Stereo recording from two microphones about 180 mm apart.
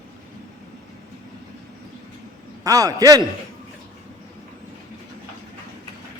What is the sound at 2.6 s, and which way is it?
Speech, 20° right (ahead or behind).